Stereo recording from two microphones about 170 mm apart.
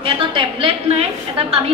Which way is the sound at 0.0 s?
30° right (ahead or behind).